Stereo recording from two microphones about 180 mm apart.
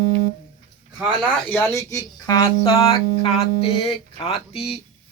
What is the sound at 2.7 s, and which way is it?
Speech, 35° left (ahead or behind).